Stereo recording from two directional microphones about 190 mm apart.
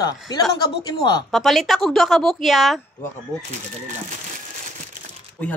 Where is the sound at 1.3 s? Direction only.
Centre (ahead or behind).